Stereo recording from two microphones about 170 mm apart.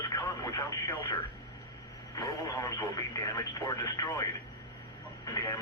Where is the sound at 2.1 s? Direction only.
20° left (ahead or behind).